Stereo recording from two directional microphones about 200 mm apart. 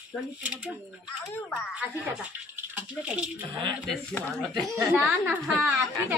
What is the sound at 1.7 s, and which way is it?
A woman's voice, 5° right (ahead or behind).